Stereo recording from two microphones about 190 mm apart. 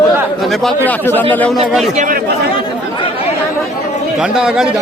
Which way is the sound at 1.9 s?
40° right (ahead or behind).